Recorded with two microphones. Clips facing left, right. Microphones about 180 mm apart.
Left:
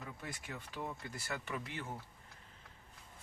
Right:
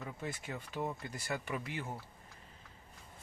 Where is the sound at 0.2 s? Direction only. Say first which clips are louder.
Right 5 dB; 25° right (ahead or behind).